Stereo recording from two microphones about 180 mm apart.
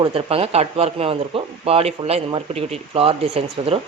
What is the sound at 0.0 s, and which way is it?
Speech, 30° right (ahead or behind).